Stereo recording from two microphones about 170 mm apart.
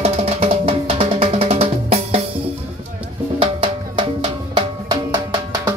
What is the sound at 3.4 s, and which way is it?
Music, 30° right (ahead or behind).